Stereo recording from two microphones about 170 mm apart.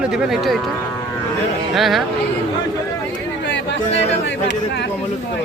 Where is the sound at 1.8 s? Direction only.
Centre (ahead or behind).